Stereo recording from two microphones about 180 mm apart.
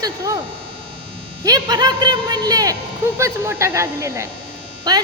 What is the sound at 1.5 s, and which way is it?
Speech, 20° right (ahead or behind).